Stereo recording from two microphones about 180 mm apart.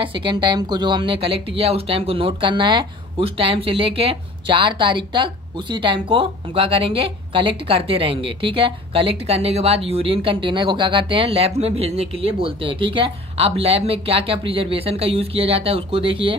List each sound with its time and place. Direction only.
0.0 s speech: 30° right (ahead or behind)